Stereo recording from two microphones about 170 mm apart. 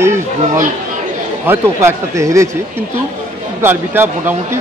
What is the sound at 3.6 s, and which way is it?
Speech, 15° right (ahead or behind).